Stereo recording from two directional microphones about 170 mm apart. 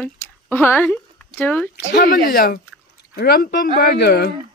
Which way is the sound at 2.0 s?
55° left (ahead or behind).